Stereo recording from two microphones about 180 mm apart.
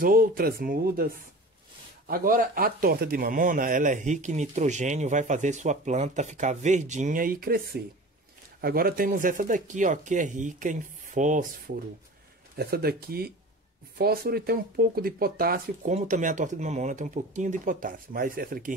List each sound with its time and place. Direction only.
0.0 s speech: 50° right (ahead or behind)
12.5 s speech: 60° right (ahead or behind)